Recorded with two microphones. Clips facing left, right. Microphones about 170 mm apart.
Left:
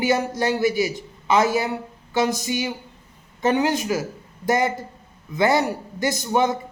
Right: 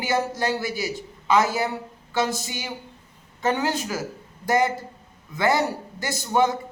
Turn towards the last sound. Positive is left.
turn(degrees=20)  # may be behind; listen again after turning